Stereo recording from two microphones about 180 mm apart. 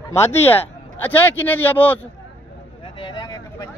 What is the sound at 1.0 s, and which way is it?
Speech, 10° left (ahead or behind).